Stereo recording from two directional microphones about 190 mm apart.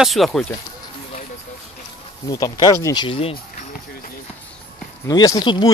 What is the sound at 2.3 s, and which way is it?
Speech, 20° left (ahead or behind).